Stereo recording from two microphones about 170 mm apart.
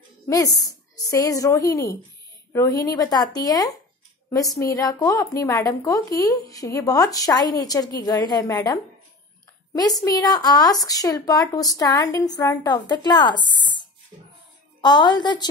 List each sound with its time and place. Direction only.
0.3 s speech: 20° left (ahead or behind)
13.6 s a sound: 25° left (ahead or behind)
14.8 s speech: 25° left (ahead or behind)